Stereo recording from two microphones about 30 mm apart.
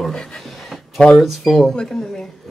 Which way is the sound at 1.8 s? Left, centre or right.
Left.